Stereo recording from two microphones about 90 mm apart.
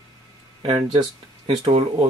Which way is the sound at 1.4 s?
90° right.